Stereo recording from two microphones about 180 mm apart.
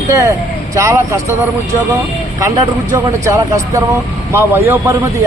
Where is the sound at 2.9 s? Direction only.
15° right (ahead or behind).